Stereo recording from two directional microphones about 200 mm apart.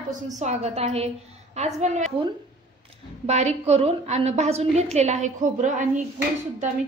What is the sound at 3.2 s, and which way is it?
A woman's voice, 35° right (ahead or behind).